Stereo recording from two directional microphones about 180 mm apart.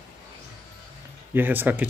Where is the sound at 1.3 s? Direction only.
10° right (ahead or behind).